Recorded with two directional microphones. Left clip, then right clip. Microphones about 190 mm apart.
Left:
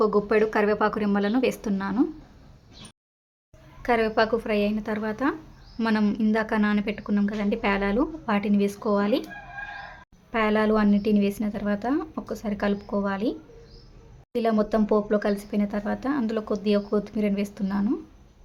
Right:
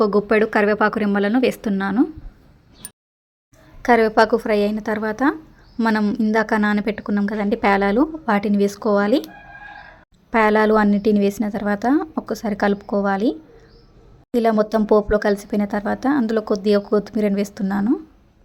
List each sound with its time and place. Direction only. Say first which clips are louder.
0.0 s speech: right 5 dB; 25° right (ahead or behind)
3.8 s speech: right 8 dB; 30° right (ahead or behind)
10.3 s speech: right 8 dB; 35° right (ahead or behind)
14.3 s speech: right 6 dB; 30° right (ahead or behind)